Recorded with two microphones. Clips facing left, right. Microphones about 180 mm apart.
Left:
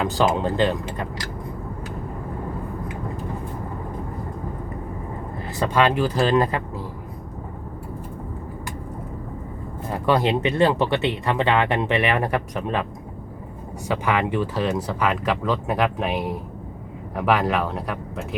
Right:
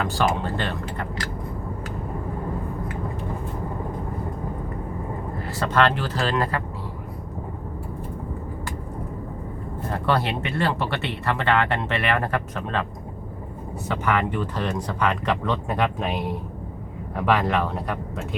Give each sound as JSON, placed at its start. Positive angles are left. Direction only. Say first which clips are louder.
{"t": 0.1, "sound": "speech", "louder": "left 3 dB", "side_deg": 20}
{"t": 5.5, "sound": "speech", "louder": "left 1 dB", "side_deg": 15}
{"t": 9.9, "sound": "speech", "louder": "left 4 dB", "side_deg": 15}
{"t": 13.8, "sound": "speech", "louder": "left 1 dB", "side_deg": 15}
{"t": 17.2, "sound": "speech", "louder": "left 1 dB", "side_deg": 0}